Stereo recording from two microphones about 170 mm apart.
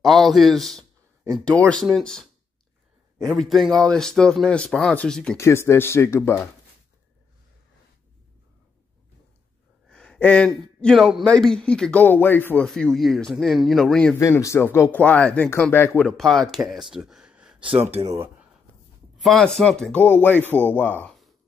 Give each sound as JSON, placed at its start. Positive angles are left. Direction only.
{"t": 0.0, "sound": "speech", "side_deg": 0}
{"t": 5.4, "sound": "speech", "side_deg": 15}
{"t": 9.8, "sound": "a sound", "side_deg": 5}
{"t": 10.8, "sound": "speech", "side_deg": 0}
{"t": 14.1, "sound": "speech", "side_deg": 15}
{"t": 17.6, "sound": "speech", "side_deg": -30}
{"t": 19.2, "sound": "speech", "side_deg": 0}